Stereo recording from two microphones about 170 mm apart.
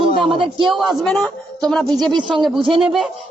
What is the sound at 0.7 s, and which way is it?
Speech, centre (ahead or behind).